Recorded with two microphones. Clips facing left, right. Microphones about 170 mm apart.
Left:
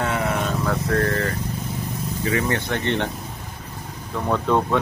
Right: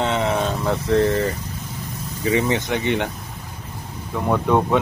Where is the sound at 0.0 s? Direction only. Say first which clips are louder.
Right 3 dB; 25° right (ahead or behind).